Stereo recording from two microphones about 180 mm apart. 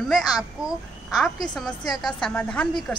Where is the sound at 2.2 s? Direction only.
5° left (ahead or behind).